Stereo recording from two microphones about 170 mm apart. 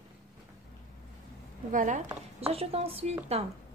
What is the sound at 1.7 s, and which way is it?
Speech, 50° right (ahead or behind).